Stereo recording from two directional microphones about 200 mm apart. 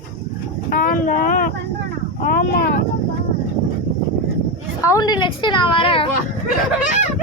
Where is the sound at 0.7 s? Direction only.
45° left (ahead or behind).